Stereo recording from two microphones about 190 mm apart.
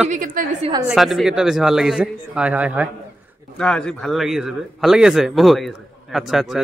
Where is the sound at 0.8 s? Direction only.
Centre (ahead or behind).